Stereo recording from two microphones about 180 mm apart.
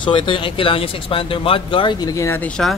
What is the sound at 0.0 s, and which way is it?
Speech, 25° left (ahead or behind).